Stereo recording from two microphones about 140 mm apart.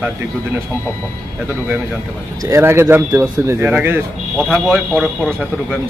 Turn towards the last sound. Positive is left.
turn(degrees=0)  # may be behind; listen again after turning